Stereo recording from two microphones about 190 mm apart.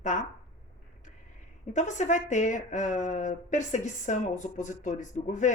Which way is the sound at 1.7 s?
40° left (ahead or behind).